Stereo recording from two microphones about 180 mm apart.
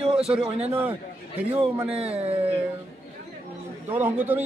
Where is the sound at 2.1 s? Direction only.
35° right (ahead or behind).